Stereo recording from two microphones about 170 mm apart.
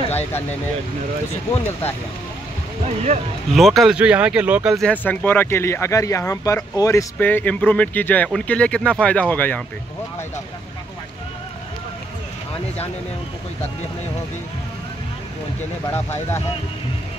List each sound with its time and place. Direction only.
0.0 s vehicle: 40° left (ahead or behind)
1.5 s speech: 10° left (ahead or behind)
3.5 s speech: centre (ahead or behind)
4.7 s speech: 10° left (ahead or behind)
15.9 s speech: 15° left (ahead or behind)